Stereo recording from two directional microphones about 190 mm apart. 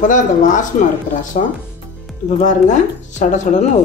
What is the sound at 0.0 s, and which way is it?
Speech, 40° left (ahead or behind).